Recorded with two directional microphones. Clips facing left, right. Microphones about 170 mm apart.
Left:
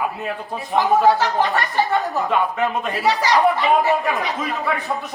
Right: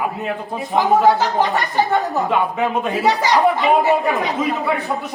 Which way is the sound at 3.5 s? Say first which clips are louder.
Right 2 dB; 20° right (ahead or behind).